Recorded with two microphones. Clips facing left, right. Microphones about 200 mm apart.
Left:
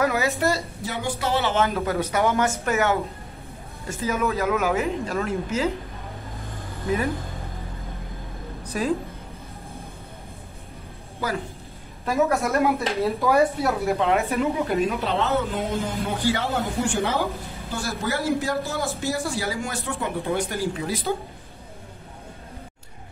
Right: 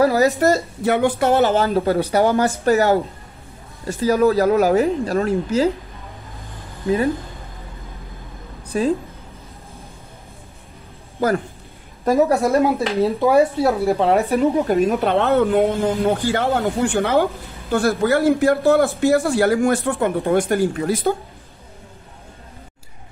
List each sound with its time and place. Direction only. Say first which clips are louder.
0.0 s speech: right 7 dB; 35° right (ahead or behind); by 1.5 s 55° right (ahead or behind)
1.5 s speech: right 6 dB; 30° right (ahead or behind)
8.6 s a sound: right 6 dB; 30° right (ahead or behind)
11.1 s speech: right 9 dB; 50° right (ahead or behind)
12.0 s speech: right 6 dB; 35° right (ahead or behind); by 21.1 s 55° right (ahead or behind)